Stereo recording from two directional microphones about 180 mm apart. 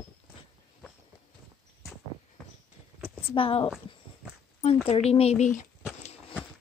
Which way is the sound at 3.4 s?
30° left (ahead or behind).